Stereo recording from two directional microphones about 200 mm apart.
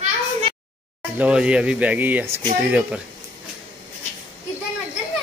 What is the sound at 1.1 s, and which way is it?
Speech, 5° right (ahead or behind).